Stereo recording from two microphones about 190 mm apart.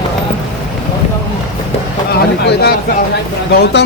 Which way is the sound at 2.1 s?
55° left (ahead or behind).